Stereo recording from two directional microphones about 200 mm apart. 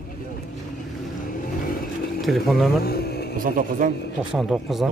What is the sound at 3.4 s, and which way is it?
Speech, 40° right (ahead or behind).